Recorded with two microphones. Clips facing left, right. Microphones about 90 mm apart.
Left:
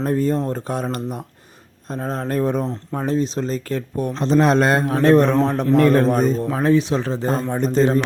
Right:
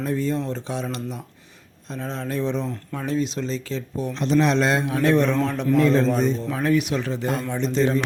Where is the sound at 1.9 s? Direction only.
45° left (ahead or behind).